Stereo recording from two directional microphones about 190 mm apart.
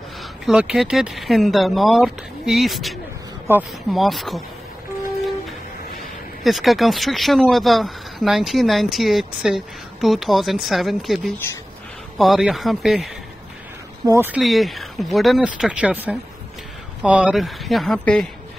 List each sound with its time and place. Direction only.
0.5 s speech: 5° right (ahead or behind)
3.5 s speech: 10° right (ahead or behind)
3.9 s speech: centre (ahead or behind)
6.4 s speech: centre (ahead or behind)
14.0 s speech: 10° right (ahead or behind)